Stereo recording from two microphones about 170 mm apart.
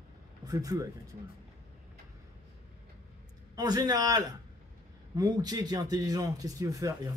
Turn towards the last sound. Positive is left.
turn(degrees=-20)  # may be behind; listen again after turning